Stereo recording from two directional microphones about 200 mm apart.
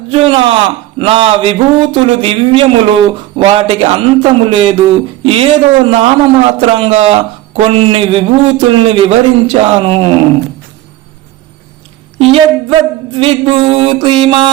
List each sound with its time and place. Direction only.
0.1 s speech: 25° right (ahead or behind)
12.2 s speech: 30° right (ahead or behind)